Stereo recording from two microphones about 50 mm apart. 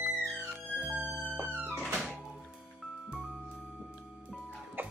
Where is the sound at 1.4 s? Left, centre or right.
Right.